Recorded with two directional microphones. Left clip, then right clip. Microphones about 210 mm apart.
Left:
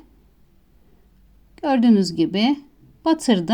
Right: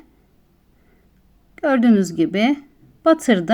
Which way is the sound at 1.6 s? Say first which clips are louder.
Right 2 dB; 20° left (ahead or behind).